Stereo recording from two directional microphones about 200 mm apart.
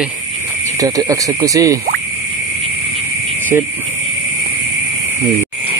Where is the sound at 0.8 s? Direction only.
15° right (ahead or behind).